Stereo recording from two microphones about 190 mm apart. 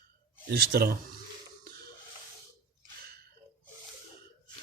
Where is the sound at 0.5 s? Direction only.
55° right (ahead or behind).